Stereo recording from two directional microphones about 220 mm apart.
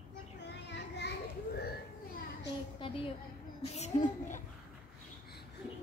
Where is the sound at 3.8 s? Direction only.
35° left (ahead or behind).